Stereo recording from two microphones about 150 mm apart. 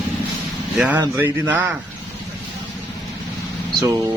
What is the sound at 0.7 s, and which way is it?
Speech, 10° right (ahead or behind).